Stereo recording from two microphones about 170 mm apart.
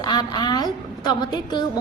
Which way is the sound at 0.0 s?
25° left (ahead or behind).